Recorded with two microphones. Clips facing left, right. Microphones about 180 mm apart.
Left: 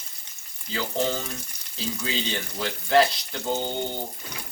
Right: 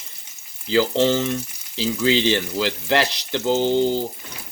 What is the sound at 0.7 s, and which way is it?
Frying, 90° right.